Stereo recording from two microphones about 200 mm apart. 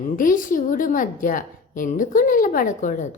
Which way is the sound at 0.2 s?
40° left (ahead or behind).